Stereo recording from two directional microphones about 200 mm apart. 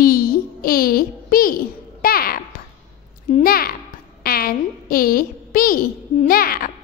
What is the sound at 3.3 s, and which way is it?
Speech, 40° left (ahead or behind).